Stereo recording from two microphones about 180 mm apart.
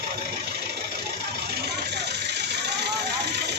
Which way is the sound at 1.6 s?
65° right (ahead or behind).